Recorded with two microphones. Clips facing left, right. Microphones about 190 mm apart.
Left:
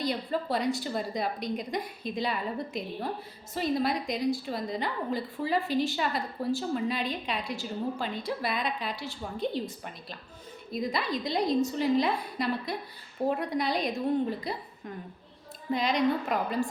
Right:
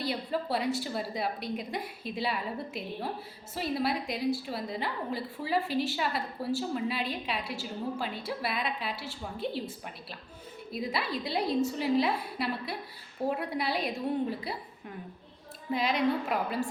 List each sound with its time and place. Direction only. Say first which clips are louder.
0.0 s a woman's voice: left 2 dB; 5° right (ahead or behind)
10.7 s a woman's voice: left 3 dB; 5° right (ahead or behind)
15.7 s a woman's voice: left 2 dB; 5° right (ahead or behind)